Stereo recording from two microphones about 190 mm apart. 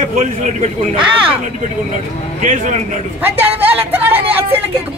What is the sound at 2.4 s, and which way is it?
Speech, 40° right (ahead or behind).